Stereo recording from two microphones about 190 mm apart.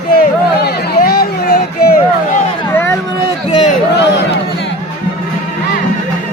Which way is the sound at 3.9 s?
65° left (ahead or behind).